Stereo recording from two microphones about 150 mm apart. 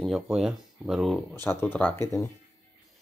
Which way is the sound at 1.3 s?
15° left (ahead or behind).